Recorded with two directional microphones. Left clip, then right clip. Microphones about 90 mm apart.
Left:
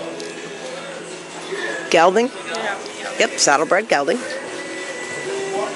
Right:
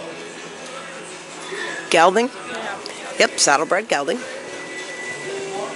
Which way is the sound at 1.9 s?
10° right (ahead or behind).